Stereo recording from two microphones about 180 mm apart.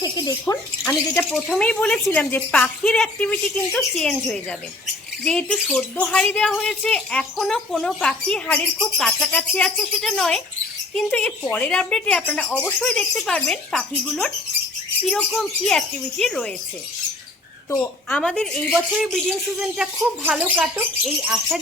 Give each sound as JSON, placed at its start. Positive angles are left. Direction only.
{"t": 0.0, "sound": "speech", "side_deg": 25}
{"t": 1.3, "sound": "speech", "side_deg": 5}
{"t": 18.1, "sound": "speech", "side_deg": 5}